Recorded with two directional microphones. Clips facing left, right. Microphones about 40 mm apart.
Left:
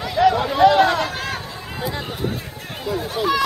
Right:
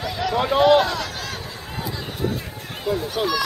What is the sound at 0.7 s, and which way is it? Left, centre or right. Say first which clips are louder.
Run: left 3 dB; left.